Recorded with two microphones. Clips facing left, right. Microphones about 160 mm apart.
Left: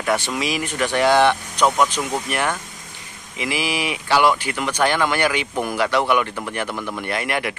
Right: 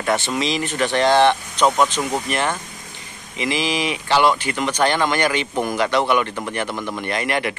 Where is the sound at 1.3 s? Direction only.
20° right (ahead or behind).